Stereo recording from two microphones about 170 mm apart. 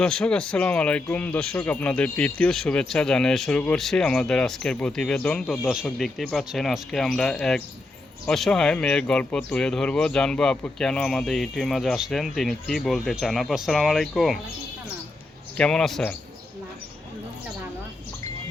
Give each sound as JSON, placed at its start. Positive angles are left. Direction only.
{"t": 0.0, "sound": "speech", "side_deg": 5}
{"t": 15.5, "sound": "speech", "side_deg": 5}